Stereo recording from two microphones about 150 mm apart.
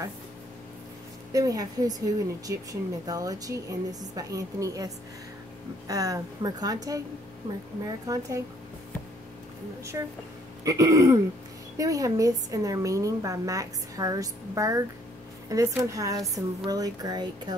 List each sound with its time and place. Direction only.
1.3 s a woman's voice: 25° right (ahead or behind)
10.6 s a woman's voice: 20° right (ahead or behind)